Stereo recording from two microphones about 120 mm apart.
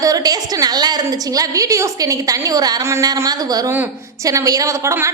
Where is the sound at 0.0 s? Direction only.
30° right (ahead or behind).